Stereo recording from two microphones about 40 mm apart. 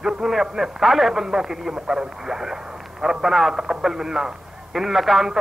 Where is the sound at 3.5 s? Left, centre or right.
Centre.